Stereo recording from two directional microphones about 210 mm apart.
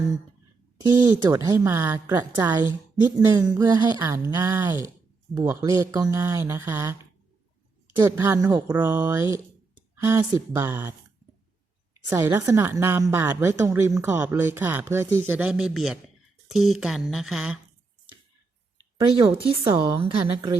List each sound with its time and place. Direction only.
0.8 s a woman's voice: 20° right (ahead or behind)
7.9 s a woman's voice: 15° right (ahead or behind)
9.9 s a sound: 15° right (ahead or behind)
10.5 s a woman's voice: 10° right (ahead or behind)
12.0 s a woman's voice: 10° right (ahead or behind)
18.9 s a woman's voice: 20° right (ahead or behind)